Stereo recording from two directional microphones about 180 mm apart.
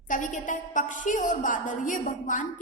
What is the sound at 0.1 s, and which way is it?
A woman's voice, 45° left (ahead or behind).